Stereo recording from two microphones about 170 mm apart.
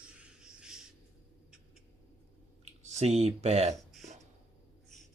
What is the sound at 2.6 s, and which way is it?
Speech, 40° right (ahead or behind).